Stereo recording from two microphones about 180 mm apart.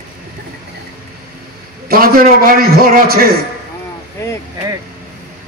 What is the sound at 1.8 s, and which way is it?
A man's voice, 55° right (ahead or behind).